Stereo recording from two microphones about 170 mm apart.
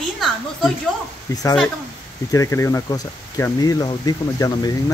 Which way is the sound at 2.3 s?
20° left (ahead or behind).